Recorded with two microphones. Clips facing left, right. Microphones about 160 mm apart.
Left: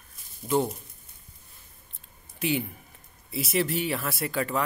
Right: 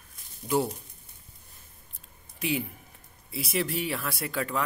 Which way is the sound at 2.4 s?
Centre (ahead or behind).